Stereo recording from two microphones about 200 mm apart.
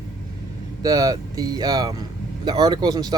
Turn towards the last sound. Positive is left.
turn(degrees=-20)  # may be behind; listen again after turning